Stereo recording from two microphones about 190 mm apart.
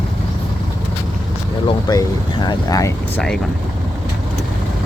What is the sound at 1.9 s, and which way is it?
Boat, 20° left (ahead or behind).